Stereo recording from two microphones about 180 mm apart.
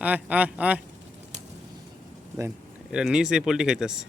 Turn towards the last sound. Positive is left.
turn(degrees=-5)  # may be behind; listen again after turning